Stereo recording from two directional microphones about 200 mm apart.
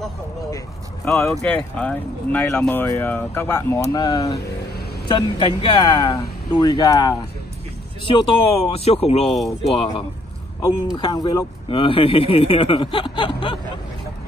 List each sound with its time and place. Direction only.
1.0 s speech: 5° left (ahead or behind); by 13.6 s 25° left (ahead or behind)